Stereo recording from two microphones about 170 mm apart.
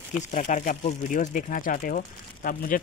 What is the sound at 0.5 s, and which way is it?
Speech, 50° left (ahead or behind).